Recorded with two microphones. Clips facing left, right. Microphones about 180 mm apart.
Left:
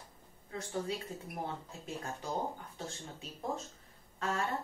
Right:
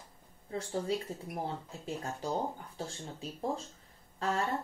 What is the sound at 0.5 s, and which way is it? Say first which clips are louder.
Speech: right 3 dB; 30° right (ahead or behind).